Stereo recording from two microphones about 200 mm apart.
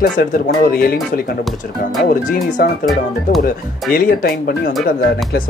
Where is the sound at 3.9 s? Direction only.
50° left (ahead or behind).